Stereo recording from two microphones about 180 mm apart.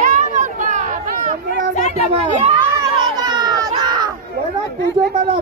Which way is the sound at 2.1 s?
35° right (ahead or behind).